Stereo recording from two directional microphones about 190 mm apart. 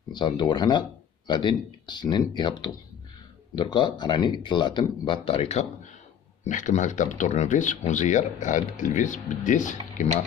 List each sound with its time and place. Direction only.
0.1 s speech: 25° left (ahead or behind); by 10.0 s 40° left (ahead or behind)